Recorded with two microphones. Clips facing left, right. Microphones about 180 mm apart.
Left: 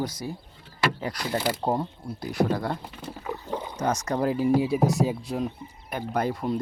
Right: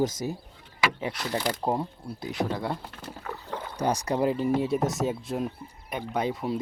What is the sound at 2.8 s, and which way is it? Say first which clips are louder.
Wild animals: left 2 dB; 10° left (ahead or behind).